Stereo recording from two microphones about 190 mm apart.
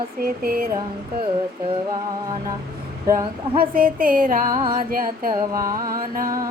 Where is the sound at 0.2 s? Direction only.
50° right (ahead or behind).